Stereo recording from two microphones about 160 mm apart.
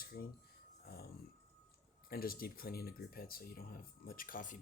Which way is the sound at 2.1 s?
65° left (ahead or behind).